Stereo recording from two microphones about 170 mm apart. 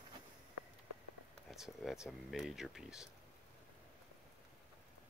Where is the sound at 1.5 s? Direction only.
Centre (ahead or behind).